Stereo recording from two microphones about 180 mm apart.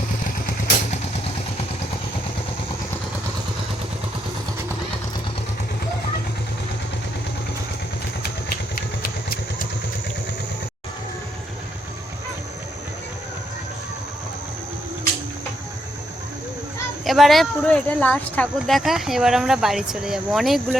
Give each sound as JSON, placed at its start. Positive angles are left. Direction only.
{"t": 8.2, "sound": "vehicle", "side_deg": 60}
{"t": 17.1, "sound": "speech", "side_deg": 0}
{"t": 18.6, "sound": "speech", "side_deg": 0}